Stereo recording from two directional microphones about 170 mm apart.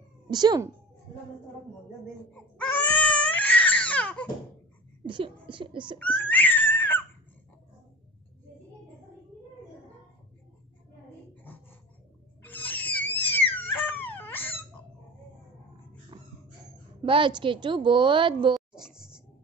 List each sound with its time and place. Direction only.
0.3 s a woman's voice: 25° right (ahead or behind)
2.3 s baby cry: 5° left (ahead or behind)
5.0 s speech: 30° right (ahead or behind)
5.9 s laughter: 10° left (ahead or behind)
12.4 s a sound: 10° left (ahead or behind)
16.1 s dog: 25° right (ahead or behind)
17.0 s a woman's voice: 30° right (ahead or behind)
18.5 s a sound: 5° right (ahead or behind)